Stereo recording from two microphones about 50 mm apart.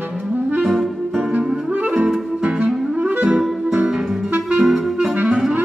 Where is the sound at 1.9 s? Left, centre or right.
Centre.